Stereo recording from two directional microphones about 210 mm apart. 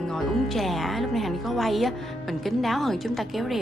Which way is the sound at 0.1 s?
Centre (ahead or behind).